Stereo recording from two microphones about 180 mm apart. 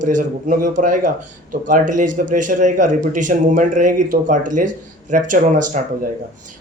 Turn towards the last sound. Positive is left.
turn(degrees=-45)  # may be behind; listen again after turning